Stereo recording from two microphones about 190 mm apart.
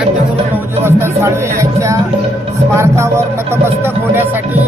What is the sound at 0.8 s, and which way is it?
Music, 15° right (ahead or behind).